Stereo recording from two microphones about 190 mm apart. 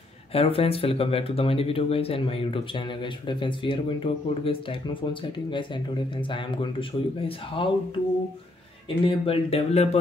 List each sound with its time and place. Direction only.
0.3 s speech: 30° left (ahead or behind)
8.8 s speech: 30° left (ahead or behind)